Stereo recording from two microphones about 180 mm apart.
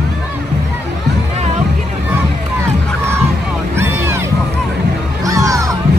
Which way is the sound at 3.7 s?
15° right (ahead or behind).